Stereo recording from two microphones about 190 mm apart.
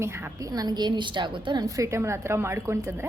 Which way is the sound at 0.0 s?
15° right (ahead or behind).